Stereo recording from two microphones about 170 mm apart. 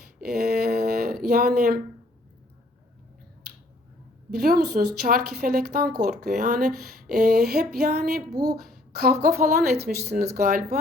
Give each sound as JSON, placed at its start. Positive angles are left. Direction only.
{"t": 0.2, "sound": "a sound", "side_deg": -65}
{"t": 1.2, "sound": "speech", "side_deg": -60}
{"t": 4.3, "sound": "speech", "side_deg": -65}